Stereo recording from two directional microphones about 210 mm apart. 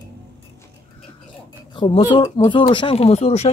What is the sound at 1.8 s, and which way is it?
Speech, 20° left (ahead or behind).